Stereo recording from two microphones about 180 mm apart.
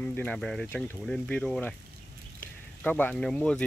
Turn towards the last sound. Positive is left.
turn(degrees=5)  # may be behind; listen again after turning